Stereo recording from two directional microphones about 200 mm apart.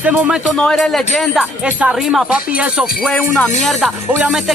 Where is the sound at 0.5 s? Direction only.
5° left (ahead or behind).